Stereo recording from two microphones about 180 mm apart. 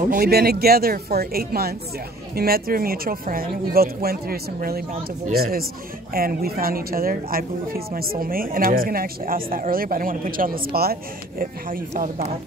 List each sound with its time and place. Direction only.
0.1 s speech: 60° right (ahead or behind)